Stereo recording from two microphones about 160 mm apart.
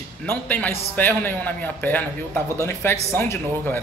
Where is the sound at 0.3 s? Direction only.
10° left (ahead or behind).